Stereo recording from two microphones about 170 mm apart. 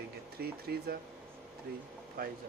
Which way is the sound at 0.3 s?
65° right (ahead or behind).